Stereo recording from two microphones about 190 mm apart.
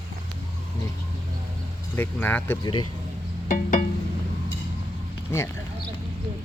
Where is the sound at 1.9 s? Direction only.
10° left (ahead or behind).